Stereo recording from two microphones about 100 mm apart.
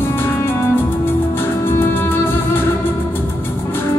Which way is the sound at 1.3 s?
25° left (ahead or behind).